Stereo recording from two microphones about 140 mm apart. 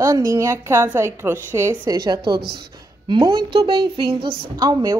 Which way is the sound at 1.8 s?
30° right (ahead or behind).